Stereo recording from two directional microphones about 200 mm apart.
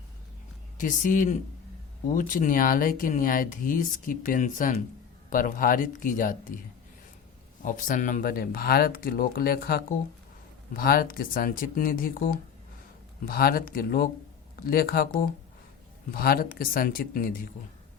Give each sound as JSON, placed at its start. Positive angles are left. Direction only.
{"t": 0.8, "sound": "speech", "side_deg": 40}
{"t": 7.6, "sound": "speech", "side_deg": 40}